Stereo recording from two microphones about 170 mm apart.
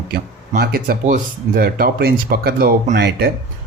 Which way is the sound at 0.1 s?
65° right (ahead or behind).